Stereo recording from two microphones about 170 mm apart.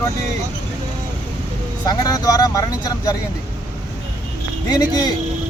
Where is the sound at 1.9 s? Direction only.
20° left (ahead or behind).